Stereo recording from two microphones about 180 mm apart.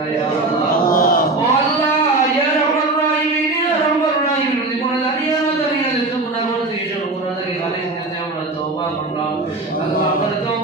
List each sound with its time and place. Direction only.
0.9 s chant: 55° left (ahead or behind)